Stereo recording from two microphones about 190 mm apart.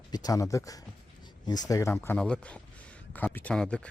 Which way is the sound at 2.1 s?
5° left (ahead or behind).